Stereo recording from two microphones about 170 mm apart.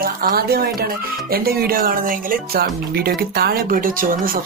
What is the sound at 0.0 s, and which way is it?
Speech, 60° right (ahead or behind).